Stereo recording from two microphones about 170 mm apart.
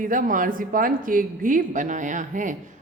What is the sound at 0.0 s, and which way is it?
A woman's voice, 55° right (ahead or behind).